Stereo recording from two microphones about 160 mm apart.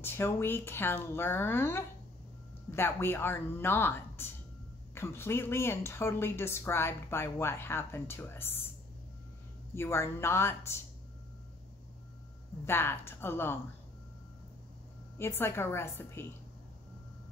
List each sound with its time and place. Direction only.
0.0 s speech: 15° left (ahead or behind)
9.8 s speech: 15° left (ahead or behind)
12.6 s speech: 15° left (ahead or behind)
15.1 s speech: 15° left (ahead or behind)